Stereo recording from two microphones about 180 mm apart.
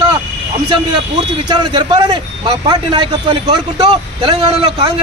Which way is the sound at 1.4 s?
25° right (ahead or behind).